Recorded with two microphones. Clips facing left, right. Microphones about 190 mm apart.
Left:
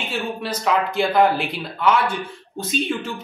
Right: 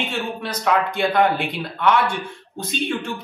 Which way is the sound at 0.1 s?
5° left (ahead or behind).